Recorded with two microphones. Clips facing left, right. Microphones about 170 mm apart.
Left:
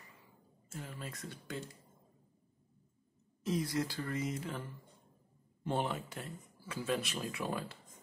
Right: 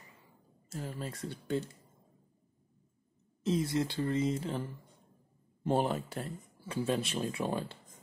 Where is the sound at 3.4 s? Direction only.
25° right (ahead or behind).